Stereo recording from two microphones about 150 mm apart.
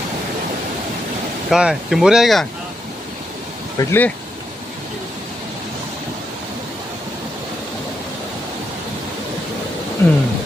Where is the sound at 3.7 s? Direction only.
20° left (ahead or behind).